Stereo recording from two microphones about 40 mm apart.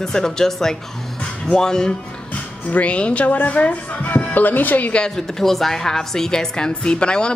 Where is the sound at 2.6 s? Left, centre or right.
Left.